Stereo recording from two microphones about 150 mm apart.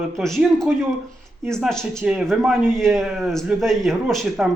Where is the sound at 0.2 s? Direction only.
5° left (ahead or behind).